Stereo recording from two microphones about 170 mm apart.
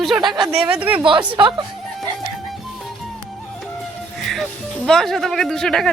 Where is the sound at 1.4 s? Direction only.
30° right (ahead or behind).